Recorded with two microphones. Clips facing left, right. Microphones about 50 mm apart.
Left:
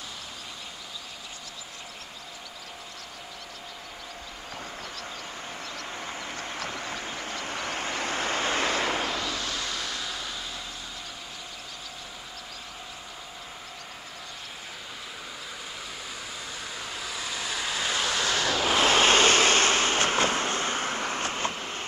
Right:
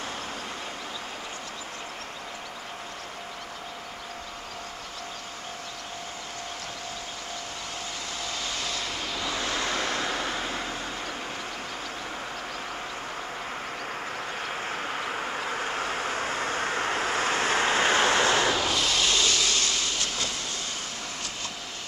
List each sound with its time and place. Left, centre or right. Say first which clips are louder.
7.3 s vehicle: left 4 dB; left
9.4 s vehicle: right 4 dB; right
14.7 s vehicle: right 10 dB; right
18.8 s vehicle: left 5 dB; left